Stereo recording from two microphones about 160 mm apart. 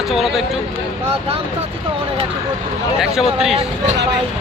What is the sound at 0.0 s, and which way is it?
Speech, centre (ahead or behind).